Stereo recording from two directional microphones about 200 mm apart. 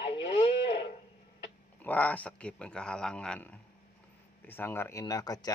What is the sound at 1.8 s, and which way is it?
A man's voice, 10° left (ahead or behind).